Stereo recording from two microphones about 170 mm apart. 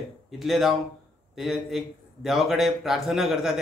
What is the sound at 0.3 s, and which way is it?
A man's voice, centre (ahead or behind).